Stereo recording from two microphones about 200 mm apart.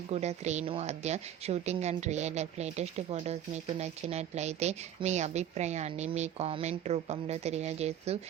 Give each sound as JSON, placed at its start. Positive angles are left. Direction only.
{"t": 0.1, "sound": "a woman's voice", "side_deg": -35}